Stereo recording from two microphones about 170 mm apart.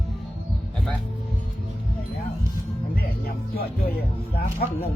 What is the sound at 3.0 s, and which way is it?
Music, 60° left (ahead or behind).